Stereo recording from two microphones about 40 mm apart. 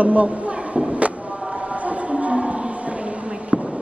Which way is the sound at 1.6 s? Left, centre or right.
Right.